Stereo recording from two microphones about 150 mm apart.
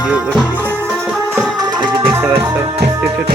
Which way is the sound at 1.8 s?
35° right (ahead or behind).